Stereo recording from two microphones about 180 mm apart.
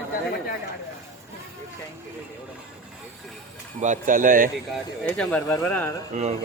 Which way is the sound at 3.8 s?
45° right (ahead or behind).